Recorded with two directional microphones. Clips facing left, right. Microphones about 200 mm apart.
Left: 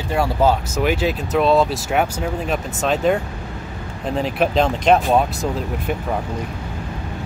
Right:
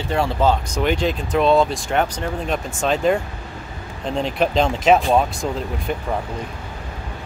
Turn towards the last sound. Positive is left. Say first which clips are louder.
# left 1 dB
turn(degrees=5)  # may be behind; listen again after turning